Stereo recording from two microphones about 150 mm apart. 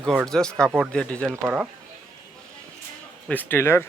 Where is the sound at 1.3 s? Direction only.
10° right (ahead or behind).